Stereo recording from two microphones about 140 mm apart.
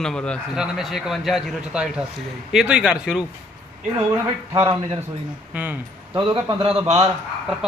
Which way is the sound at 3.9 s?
20° right (ahead or behind).